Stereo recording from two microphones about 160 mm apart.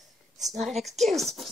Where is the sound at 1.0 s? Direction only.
Centre (ahead or behind).